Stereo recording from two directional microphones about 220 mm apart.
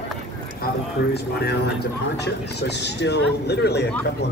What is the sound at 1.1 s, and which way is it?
Speech, 45° left (ahead or behind).